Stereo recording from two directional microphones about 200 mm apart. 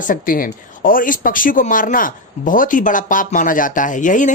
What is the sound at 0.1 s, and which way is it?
Speech, 45° left (ahead or behind).